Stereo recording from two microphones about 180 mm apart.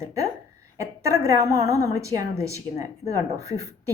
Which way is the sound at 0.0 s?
15° right (ahead or behind).